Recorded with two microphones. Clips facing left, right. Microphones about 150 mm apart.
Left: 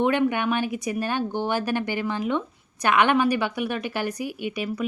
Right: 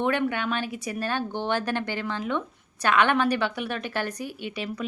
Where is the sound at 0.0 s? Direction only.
15° left (ahead or behind).